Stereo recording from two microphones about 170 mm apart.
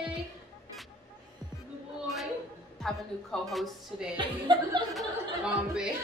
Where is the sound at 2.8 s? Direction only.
Centre (ahead or behind).